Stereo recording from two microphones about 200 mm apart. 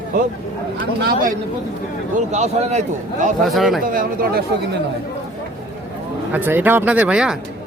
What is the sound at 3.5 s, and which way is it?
Speech, centre (ahead or behind).